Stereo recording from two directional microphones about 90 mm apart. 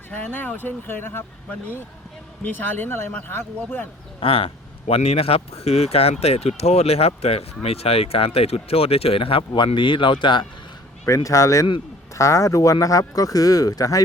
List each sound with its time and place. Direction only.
0.1 s speech: 20° left (ahead or behind)
2.4 s speech: 20° left (ahead or behind)
4.2 s speech: 90° left; by 10.4 s 65° left (ahead or behind)
11.0 s speech: 35° left (ahead or behind)